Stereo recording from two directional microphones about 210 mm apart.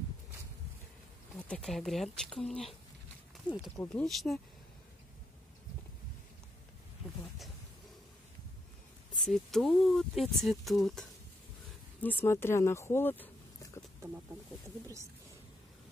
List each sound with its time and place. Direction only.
1.5 s speech: centre (ahead or behind)
3.7 s speech: 10° left (ahead or behind)
9.1 s speech: centre (ahead or behind)